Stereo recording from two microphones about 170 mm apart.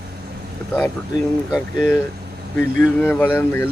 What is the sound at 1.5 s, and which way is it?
Speech, 5° left (ahead or behind).